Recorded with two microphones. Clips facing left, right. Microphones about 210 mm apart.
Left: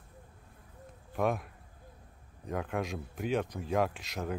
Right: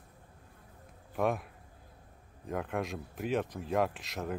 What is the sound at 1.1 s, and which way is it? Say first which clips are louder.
Speech: even; centre (ahead or behind).